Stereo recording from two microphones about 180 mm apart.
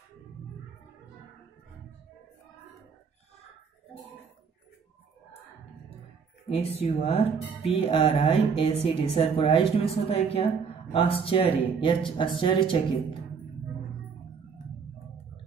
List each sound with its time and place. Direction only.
6.5 s speech: 35° left (ahead or behind)